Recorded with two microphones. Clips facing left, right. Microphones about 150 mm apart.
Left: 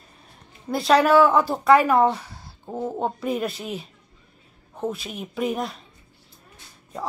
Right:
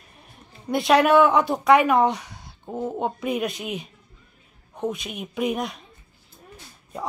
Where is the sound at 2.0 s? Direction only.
30° left (ahead or behind).